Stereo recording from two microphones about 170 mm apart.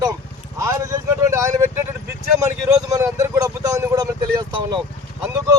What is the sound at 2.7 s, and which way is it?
Speech, 20° right (ahead or behind).